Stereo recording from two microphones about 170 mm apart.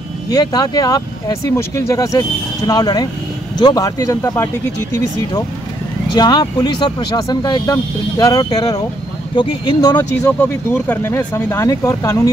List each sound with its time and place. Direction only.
0.3 s speech: 20° left (ahead or behind)
6.1 s speech: 25° left (ahead or behind)
10.2 s speech: 10° left (ahead or behind)